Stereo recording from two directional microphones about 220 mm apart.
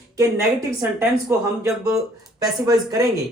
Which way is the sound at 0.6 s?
10° right (ahead or behind).